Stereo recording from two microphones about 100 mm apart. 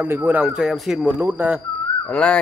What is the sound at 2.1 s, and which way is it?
Speech, 10° left (ahead or behind).